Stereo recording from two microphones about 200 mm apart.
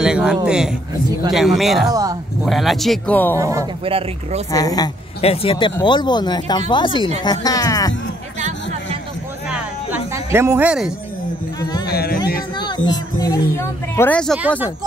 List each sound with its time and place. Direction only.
0.0 s a man's voice: 5° right (ahead or behind)
1.9 s speech: 20° right (ahead or behind)
2.4 s speech: centre (ahead or behind)
3.3 s speech: 15° right (ahead or behind)
3.8 s speech: 30° right (ahead or behind)
4.5 s speech: 20° left (ahead or behind)
5.2 s speech: 30° left (ahead or behind)
9.5 s a sound: 10° right (ahead or behind)
11.8 s a sound: 50° left (ahead or behind)
12.5 s speech: 20° left (ahead or behind); by 14.4 s 5° left (ahead or behind)